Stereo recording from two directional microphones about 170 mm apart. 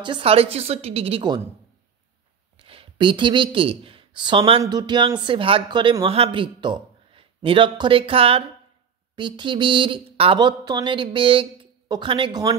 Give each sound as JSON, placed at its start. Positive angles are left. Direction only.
{"t": 0.0, "sound": "a woman's voice", "side_deg": -30}
{"t": 2.6, "sound": "speech", "side_deg": -30}